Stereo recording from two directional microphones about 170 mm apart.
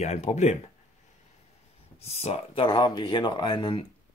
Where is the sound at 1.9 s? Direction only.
40° left (ahead or behind).